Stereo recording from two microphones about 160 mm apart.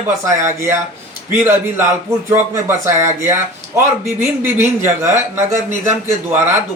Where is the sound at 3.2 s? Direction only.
15° right (ahead or behind).